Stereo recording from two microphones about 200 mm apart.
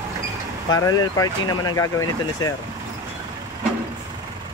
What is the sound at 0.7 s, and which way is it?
Speech, 20° left (ahead or behind).